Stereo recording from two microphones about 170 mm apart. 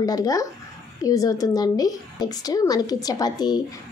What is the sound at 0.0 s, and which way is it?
A woman's voice, 20° left (ahead or behind).